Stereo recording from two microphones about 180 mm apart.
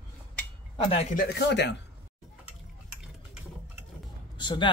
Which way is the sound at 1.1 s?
70° left (ahead or behind).